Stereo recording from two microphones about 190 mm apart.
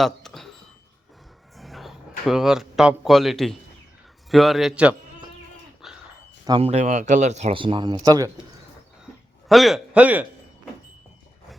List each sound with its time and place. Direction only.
0.0 s a sound: centre (ahead or behind)
1.5 s a man's voice: centre (ahead or behind)
5.8 s a sound: centre (ahead or behind)
6.4 s speech: 25° right (ahead or behind)
6.7 s speech: 40° right (ahead or behind); by 8.3 s 20° right (ahead or behind)
9.5 s a man's voice: centre (ahead or behind)